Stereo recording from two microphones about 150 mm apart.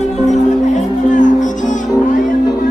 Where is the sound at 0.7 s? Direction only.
55° left (ahead or behind).